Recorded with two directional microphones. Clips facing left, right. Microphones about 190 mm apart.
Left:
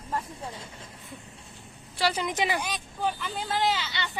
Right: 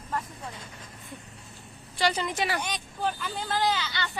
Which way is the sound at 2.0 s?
10° left (ahead or behind).